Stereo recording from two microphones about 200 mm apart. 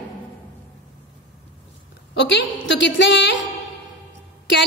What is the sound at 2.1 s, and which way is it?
A woman's voice, 65° left (ahead or behind).